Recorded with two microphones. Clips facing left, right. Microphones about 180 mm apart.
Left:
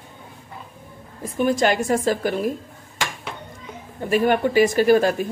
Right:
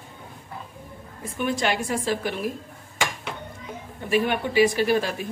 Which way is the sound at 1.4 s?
40° left (ahead or behind).